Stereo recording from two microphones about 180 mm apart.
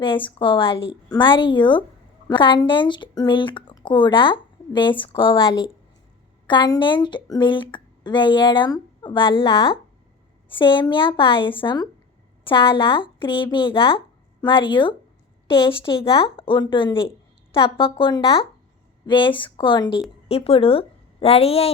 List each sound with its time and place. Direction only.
0.0 s a woman's voice: 30° left (ahead or behind)